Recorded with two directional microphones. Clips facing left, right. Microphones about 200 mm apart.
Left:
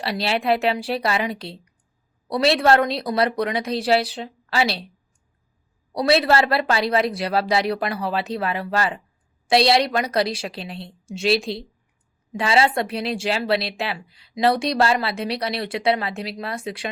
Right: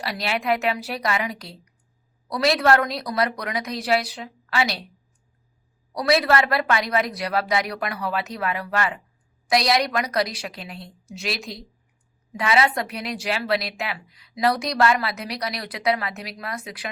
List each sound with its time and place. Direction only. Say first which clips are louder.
0.0 s a woman's voice: left 3 dB; 30° left (ahead or behind)
5.9 s a woman's voice: left 2 dB; 25° left (ahead or behind)